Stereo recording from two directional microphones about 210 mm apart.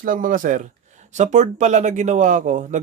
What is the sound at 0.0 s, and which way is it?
Speech, 40° right (ahead or behind).